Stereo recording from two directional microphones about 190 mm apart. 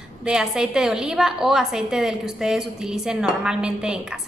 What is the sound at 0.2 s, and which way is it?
A woman's voice, 5° right (ahead or behind).